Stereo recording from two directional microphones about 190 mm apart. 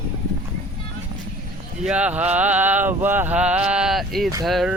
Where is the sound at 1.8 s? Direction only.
5° right (ahead or behind).